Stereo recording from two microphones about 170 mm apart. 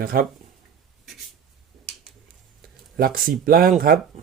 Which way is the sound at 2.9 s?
60° right (ahead or behind).